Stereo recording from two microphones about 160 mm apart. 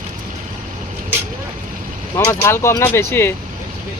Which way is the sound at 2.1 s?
15° left (ahead or behind).